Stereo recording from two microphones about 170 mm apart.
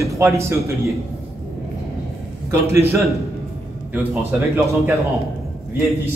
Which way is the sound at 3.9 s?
10° right (ahead or behind).